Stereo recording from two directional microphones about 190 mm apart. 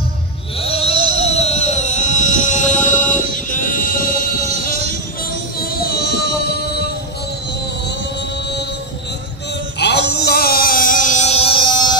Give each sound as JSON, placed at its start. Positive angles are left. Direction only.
{"t": 0.6, "sound": "sheep", "side_deg": 30}
{"t": 4.6, "sound": "music", "side_deg": 50}
{"t": 5.6, "sound": "child singing", "side_deg": 55}
{"t": 6.1, "sound": "music", "side_deg": 55}
{"t": 9.8, "sound": "a sound", "side_deg": 60}
{"t": 10.1, "sound": "music", "side_deg": 55}